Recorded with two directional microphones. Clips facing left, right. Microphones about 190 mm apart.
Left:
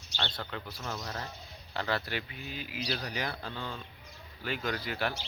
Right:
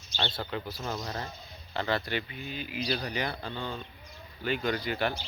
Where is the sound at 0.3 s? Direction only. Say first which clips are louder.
Right 5 dB; 5° right (ahead or behind).